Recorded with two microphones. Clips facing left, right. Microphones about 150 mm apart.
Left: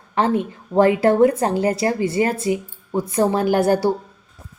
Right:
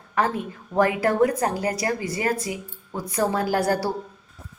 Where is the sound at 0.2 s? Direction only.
25° left (ahead or behind).